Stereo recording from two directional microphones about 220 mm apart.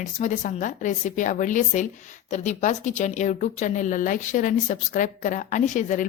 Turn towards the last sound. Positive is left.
turn(degrees=35)  # may be behind; listen again after turning